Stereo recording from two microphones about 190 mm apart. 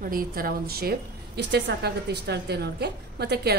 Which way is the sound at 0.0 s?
50° right (ahead or behind).